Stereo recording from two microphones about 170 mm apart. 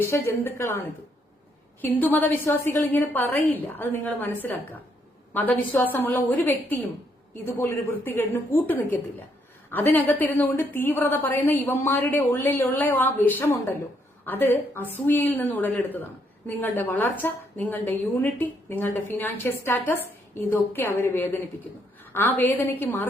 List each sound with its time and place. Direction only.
0.0 s a woman's voice: 15° left (ahead or behind)